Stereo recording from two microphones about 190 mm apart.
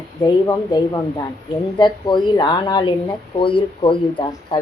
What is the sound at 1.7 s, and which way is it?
Speech, 25° left (ahead or behind).